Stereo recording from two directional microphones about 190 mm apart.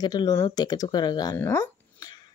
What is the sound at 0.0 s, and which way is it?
A woman's voice, 20° left (ahead or behind).